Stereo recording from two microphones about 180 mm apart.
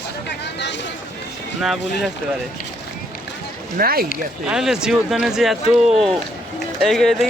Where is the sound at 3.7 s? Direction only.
55° right (ahead or behind).